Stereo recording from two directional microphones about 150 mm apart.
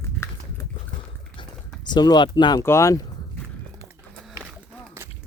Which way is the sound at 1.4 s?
30° left (ahead or behind).